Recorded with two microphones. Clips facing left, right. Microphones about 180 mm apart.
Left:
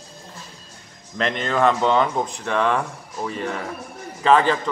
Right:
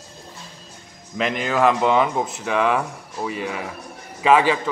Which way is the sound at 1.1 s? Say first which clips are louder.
Right 1 dB; 5° right (ahead or behind).